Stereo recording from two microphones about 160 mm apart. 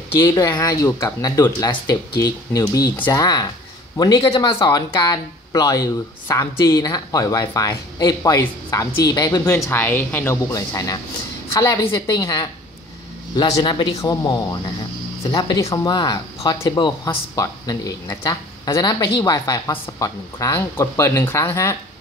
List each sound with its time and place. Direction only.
0.3 s speech: 25° left (ahead or behind)